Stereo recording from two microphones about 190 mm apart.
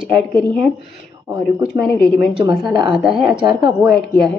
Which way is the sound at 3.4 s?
20° right (ahead or behind).